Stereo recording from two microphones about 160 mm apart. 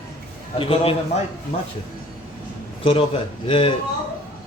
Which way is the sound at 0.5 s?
35° left (ahead or behind).